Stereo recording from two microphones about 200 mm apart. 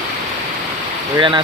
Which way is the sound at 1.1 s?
25° right (ahead or behind).